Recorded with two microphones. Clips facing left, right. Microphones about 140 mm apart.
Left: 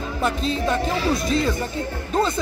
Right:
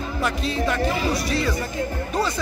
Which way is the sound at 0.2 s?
30° left (ahead or behind).